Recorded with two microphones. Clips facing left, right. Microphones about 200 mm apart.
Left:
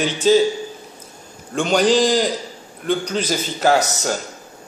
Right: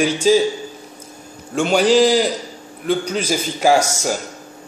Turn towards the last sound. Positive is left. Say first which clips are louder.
# right 2 dB
turn(degrees=-10)  # may be behind; listen again after turning